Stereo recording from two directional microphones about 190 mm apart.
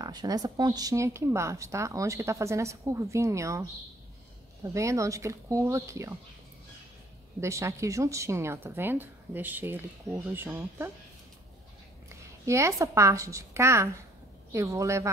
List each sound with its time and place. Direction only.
0.0 s speech: 20° right (ahead or behind)
4.6 s speech: 15° right (ahead or behind)
7.3 s speech: 15° right (ahead or behind)
12.4 s speech: 15° right (ahead or behind)